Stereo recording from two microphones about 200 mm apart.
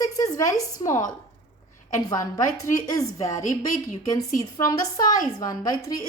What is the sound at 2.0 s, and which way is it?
A woman's voice, 20° left (ahead or behind).